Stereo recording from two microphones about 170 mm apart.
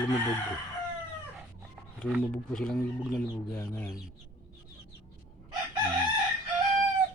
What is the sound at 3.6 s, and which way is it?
Speech, 15° left (ahead or behind).